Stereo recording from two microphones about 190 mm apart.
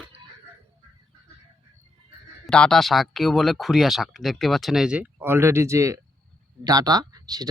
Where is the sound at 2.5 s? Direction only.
5° left (ahead or behind).